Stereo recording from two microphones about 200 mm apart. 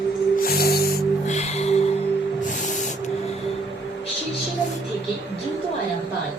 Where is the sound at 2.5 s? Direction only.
40° left (ahead or behind).